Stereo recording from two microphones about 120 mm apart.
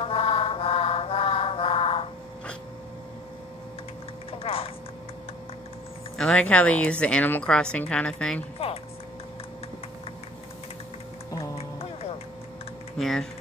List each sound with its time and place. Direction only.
0.0 s mantra: 55° left (ahead or behind)
4.3 s a sound: 50° left (ahead or behind)
6.1 s speech: 5° left (ahead or behind)
11.5 s music: 55° left (ahead or behind)
12.9 s speech: 5° left (ahead or behind)